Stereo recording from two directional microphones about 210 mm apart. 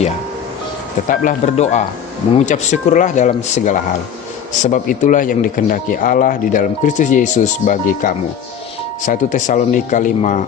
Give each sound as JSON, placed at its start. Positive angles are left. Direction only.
{"t": 1.0, "sound": "speech", "side_deg": 40}